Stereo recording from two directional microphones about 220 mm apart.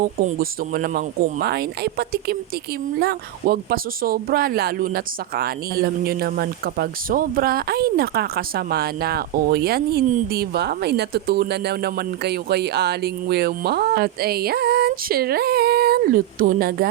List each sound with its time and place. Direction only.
0.0 s speech: 40° right (ahead or behind)